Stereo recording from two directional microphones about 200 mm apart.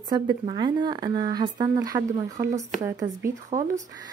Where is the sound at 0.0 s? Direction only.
20° right (ahead or behind).